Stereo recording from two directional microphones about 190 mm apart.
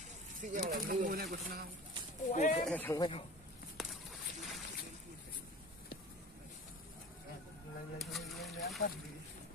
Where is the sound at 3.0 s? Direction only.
25° left (ahead or behind).